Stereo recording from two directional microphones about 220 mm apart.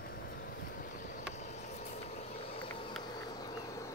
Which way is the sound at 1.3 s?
30° left (ahead or behind).